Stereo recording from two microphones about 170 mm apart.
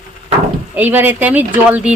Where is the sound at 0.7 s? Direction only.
10° right (ahead or behind).